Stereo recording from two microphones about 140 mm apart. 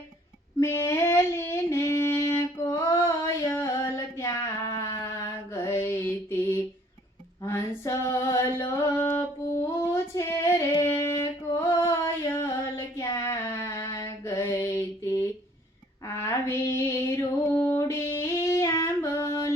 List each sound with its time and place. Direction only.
0.6 s female singing: 20° left (ahead or behind)
3.4 s a sound: 20° left (ahead or behind)
5.5 s mantra: 20° left (ahead or behind)
7.4 s mantra: 20° left (ahead or behind)
16.0 s female singing: 20° left (ahead or behind)